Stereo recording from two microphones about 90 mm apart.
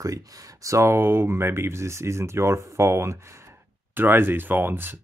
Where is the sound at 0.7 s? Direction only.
30° right (ahead or behind).